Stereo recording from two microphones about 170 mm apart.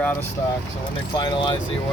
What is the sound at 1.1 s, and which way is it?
Speech, 25° left (ahead or behind).